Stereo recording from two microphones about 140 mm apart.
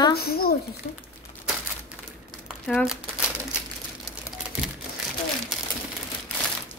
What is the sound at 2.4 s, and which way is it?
Crumpling, 5° right (ahead or behind).